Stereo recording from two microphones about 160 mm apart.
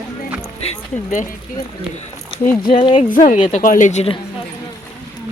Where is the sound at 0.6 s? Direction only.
45° left (ahead or behind).